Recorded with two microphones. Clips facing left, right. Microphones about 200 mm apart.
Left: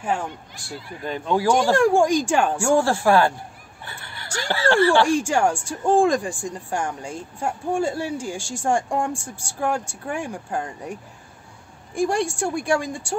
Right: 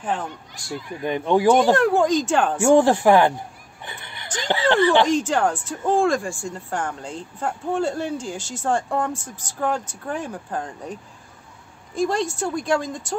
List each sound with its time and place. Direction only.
0.0 s speech: 10° left (ahead or behind)
0.7 s speech: 15° right (ahead or behind)
1.8 s speech: 10° left (ahead or behind)
2.6 s speech: 20° right (ahead or behind)
5.0 s speech: 10° left (ahead or behind)